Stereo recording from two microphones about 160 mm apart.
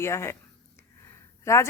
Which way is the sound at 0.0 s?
15° left (ahead or behind).